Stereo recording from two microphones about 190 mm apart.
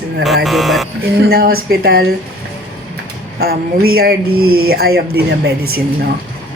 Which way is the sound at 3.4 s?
55° right (ahead or behind).